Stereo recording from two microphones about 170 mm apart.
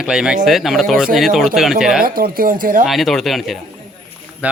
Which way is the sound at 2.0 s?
60° right (ahead or behind).